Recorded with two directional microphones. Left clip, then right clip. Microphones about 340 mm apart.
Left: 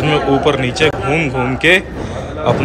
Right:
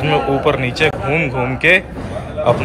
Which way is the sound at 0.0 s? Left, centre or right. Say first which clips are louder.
Left 2 dB; centre.